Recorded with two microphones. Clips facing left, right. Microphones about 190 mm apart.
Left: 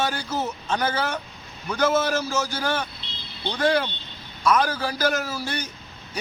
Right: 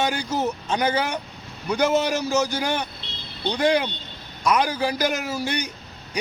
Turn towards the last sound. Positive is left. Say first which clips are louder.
# right 2 dB
turn(degrees=-15)  # may be behind; listen again after turning